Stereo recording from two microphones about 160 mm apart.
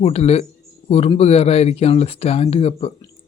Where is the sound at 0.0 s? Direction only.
40° left (ahead or behind).